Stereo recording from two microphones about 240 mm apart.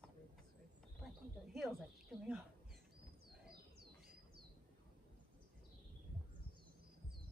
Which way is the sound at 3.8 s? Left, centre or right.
Right.